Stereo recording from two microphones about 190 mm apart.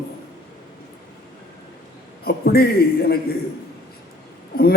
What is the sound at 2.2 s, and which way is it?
Speech, 55° left (ahead or behind).